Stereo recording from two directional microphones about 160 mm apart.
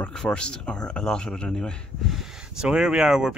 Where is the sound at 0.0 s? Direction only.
5° left (ahead or behind).